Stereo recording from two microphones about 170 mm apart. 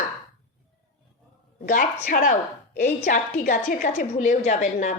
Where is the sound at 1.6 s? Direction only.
55° left (ahead or behind).